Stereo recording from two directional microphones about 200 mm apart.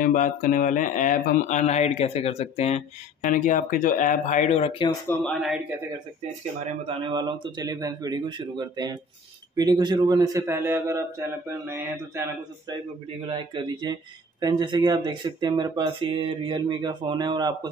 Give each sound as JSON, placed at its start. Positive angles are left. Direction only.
{"t": 0.0, "sound": "speech", "side_deg": 40}
{"t": 5.0, "sound": "speech", "side_deg": 10}
{"t": 7.0, "sound": "a man's voice", "side_deg": -25}